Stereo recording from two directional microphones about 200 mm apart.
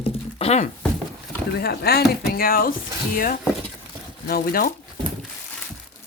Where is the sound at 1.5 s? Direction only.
55° left (ahead or behind).